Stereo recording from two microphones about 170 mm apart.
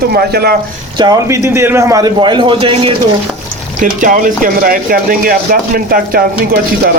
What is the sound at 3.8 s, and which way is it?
Speech, 50° right (ahead or behind).